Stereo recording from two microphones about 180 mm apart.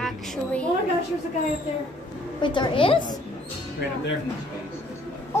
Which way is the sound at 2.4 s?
25° left (ahead or behind).